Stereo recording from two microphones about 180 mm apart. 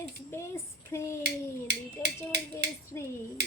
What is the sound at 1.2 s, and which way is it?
Finger snapping, 65° right (ahead or behind).